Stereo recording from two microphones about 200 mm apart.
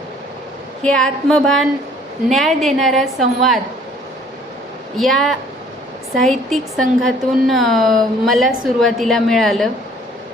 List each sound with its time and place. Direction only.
0.8 s speech: 5° left (ahead or behind)
4.9 s speech: centre (ahead or behind)